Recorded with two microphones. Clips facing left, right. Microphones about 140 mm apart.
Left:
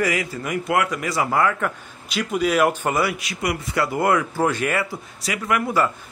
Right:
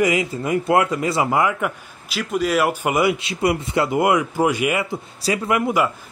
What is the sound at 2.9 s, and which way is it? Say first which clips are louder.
Speech: right 4 dB; 25° right (ahead or behind).